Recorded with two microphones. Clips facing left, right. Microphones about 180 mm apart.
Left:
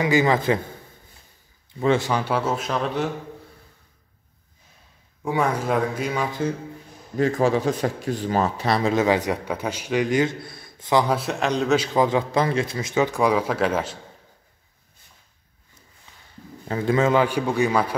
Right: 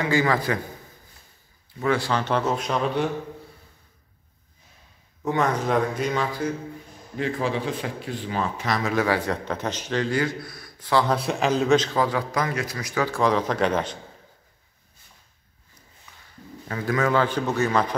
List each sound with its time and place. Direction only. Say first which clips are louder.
0.0 s a man's voice: left 3 dB; 20° left (ahead or behind)
1.8 s speech: left 3 dB; 20° left (ahead or behind); by 3.1 s centre (ahead or behind)
5.2 s speech: even; 10° left (ahead or behind)
7.2 s a man's voice: left 6 dB; 45° left (ahead or behind); by 11.1 s 15° left (ahead or behind)
11.1 s a man's voice: right 1 dB; centre (ahead or behind)
11.8 s a man's voice: left 3 dB; 20° left (ahead or behind)
16.1 s a sound: right 1 dB; 25° left (ahead or behind)
16.6 s a man's voice: left 4 dB; 25° left (ahead or behind)
17.2 s speech: left 2 dB; 10° left (ahead or behind)